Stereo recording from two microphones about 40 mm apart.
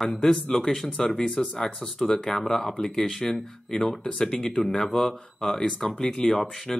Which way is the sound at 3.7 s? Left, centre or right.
Centre.